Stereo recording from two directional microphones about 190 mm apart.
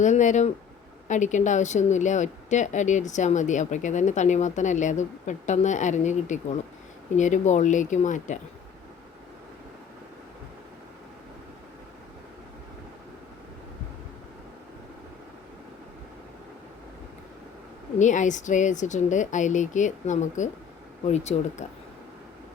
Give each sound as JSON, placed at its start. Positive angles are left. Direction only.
{"t": 0.0, "sound": "a woman's voice", "side_deg": 40}
{"t": 18.0, "sound": "a woman's voice", "side_deg": 40}